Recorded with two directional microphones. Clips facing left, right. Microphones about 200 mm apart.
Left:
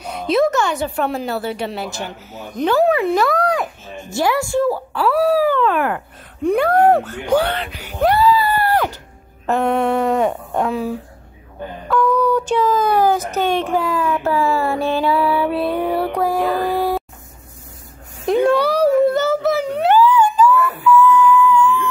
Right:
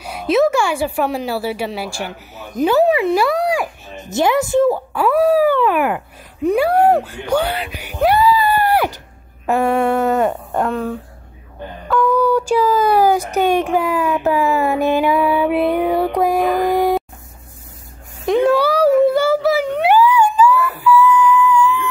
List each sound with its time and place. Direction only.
0.0 s speech: 5° right (ahead or behind)
3.9 s speech: 20° right (ahead or behind)
8.1 s screaming: 15° right (ahead or behind)
9.5 s speech: 10° right (ahead or behind)
16.2 s a sound: 15° right (ahead or behind)
18.2 s a sound: centre (ahead or behind)
19.9 s police car: 15° right (ahead or behind)
21.0 s music: 15° right (ahead or behind)